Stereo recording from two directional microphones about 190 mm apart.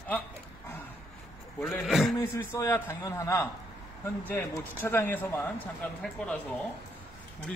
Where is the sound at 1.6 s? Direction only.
Centre (ahead or behind).